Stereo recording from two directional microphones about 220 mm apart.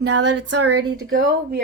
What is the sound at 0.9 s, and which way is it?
Speech, 60° right (ahead or behind).